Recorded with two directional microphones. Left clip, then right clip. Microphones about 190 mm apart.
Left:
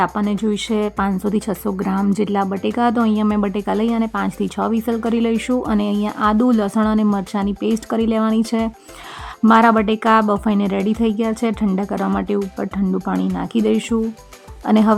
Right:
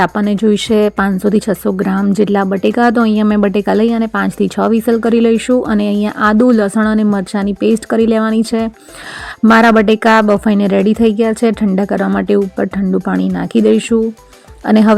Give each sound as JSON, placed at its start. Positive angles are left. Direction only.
{"t": 0.0, "sound": "speech", "side_deg": -25}